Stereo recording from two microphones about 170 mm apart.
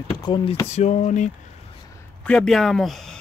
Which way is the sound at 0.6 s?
40° left (ahead or behind).